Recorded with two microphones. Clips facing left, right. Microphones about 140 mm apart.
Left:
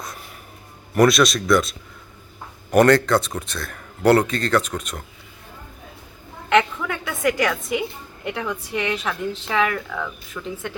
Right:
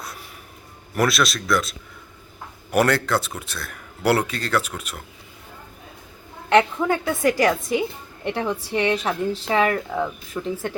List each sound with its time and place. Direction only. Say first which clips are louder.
0.9 s speech: left 5 dB; 5° right (ahead or behind)
2.7 s speech: left 5 dB; 5° right (ahead or behind)
6.5 s a woman's voice: right 2 dB; 35° right (ahead or behind)